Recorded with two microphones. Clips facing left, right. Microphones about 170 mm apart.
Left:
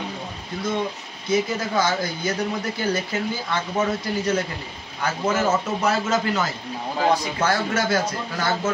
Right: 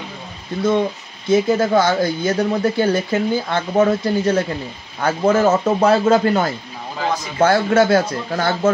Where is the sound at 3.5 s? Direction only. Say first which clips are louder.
Right 7 dB; 50° right (ahead or behind).